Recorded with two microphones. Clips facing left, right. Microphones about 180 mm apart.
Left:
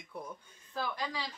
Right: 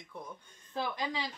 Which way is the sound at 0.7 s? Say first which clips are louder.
Right 2 dB; 20° right (ahead or behind).